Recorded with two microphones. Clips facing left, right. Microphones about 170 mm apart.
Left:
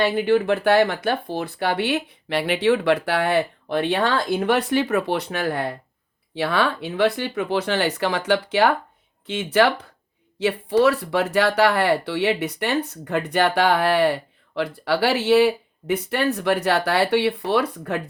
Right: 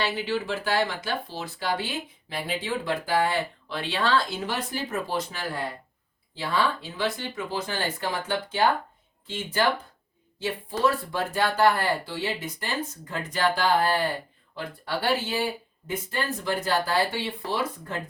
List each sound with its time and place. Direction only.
0.0 s speech: 55° left (ahead or behind)